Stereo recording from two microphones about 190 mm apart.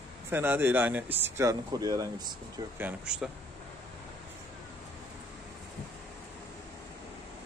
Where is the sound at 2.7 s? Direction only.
5° right (ahead or behind).